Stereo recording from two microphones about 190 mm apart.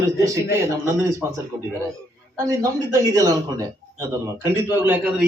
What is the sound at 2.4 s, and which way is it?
A man's voice, 20° right (ahead or behind).